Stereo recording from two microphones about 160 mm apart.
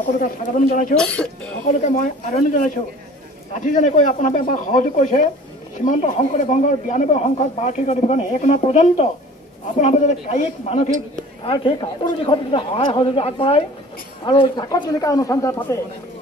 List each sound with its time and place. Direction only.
0.0 s speech: 55° left (ahead or behind)
0.9 s speech: 5° left (ahead or behind)
1.7 s speech: 55° left (ahead or behind)
11.4 s a man's voice: 35° left (ahead or behind)